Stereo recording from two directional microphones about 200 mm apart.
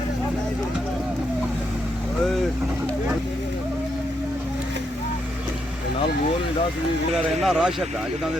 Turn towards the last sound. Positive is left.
turn(degrees=0)  # may be behind; listen again after turning